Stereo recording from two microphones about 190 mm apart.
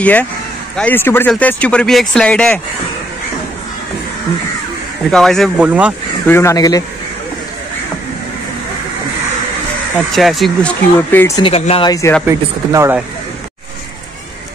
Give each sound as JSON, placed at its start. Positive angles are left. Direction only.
{"t": 0.0, "sound": "speech", "side_deg": 5}
{"t": 5.1, "sound": "speech", "side_deg": 0}
{"t": 6.2, "sound": "speech", "side_deg": 15}
{"t": 9.9, "sound": "speech", "side_deg": 0}
{"t": 11.0, "sound": "speech", "side_deg": 10}
{"t": 11.4, "sound": "speech", "side_deg": 30}
{"t": 11.9, "sound": "speech", "side_deg": 15}
{"t": 12.3, "sound": "speech", "side_deg": -15}